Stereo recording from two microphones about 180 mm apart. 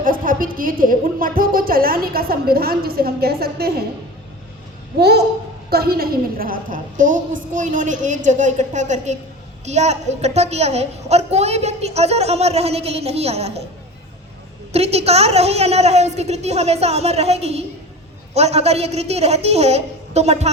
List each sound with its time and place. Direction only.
0.0 s a woman's voice: 50° right (ahead or behind)
4.9 s a woman's voice: 65° right (ahead or behind); by 13.6 s 35° right (ahead or behind)
14.7 s a woman's voice: 35° right (ahead or behind)